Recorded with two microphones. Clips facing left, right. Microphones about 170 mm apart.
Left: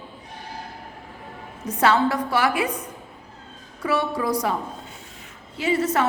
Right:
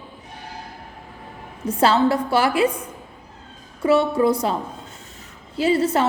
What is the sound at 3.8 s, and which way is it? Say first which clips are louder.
A woman's voice: right 7 dB; 25° right (ahead or behind).